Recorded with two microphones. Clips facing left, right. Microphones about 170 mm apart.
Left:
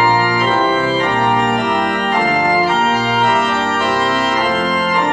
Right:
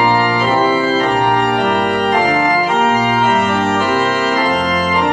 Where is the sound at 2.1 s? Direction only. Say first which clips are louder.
Even; 15° right (ahead or behind).